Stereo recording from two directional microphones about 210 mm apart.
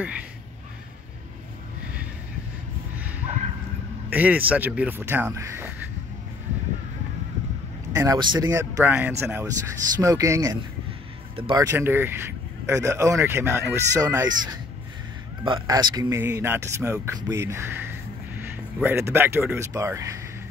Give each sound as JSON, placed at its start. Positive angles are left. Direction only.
{"t": 4.1, "sound": "speech", "side_deg": -5}
{"t": 7.9, "sound": "speech", "side_deg": -15}
{"t": 11.6, "sound": "speech", "side_deg": -10}